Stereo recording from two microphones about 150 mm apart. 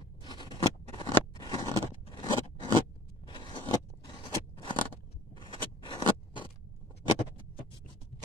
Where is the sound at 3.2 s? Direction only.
30° left (ahead or behind).